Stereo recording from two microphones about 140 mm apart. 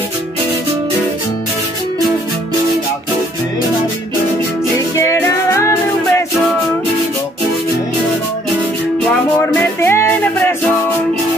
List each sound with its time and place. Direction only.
4.7 s music: 20° left (ahead or behind)
9.6 s music: 15° left (ahead or behind)